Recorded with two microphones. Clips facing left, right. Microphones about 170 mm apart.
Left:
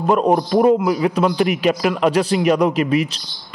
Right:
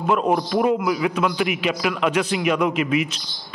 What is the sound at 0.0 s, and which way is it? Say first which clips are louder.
A man's voice: left 4 dB; 35° left (ahead or behind).